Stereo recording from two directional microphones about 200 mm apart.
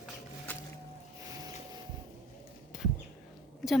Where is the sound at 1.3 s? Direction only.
20° right (ahead or behind).